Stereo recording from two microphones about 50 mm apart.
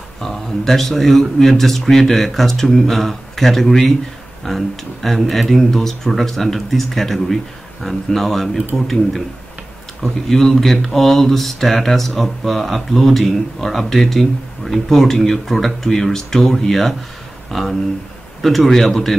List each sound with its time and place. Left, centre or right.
0.2 s speech: centre
10.2 s speech: centre